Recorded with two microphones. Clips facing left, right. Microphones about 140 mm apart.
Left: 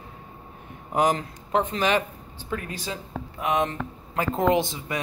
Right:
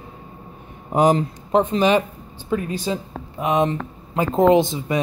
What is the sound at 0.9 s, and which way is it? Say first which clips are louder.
Speech: right 6 dB; 25° right (ahead or behind).